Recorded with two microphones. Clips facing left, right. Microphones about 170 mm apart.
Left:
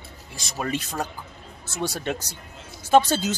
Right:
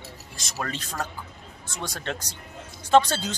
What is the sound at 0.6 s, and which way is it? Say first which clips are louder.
Speech: left 5 dB; 10° left (ahead or behind).